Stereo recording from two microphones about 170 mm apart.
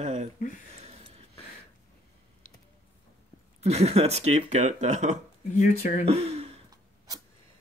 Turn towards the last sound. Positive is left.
turn(degrees=-40)  # may be behind; listen again after turning